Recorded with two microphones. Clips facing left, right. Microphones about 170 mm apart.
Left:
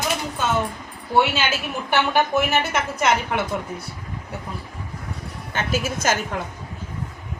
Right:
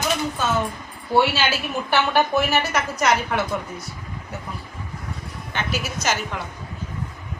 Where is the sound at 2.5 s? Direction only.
25° left (ahead or behind).